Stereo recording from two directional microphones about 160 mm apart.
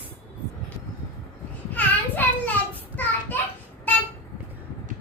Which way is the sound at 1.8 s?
10° left (ahead or behind).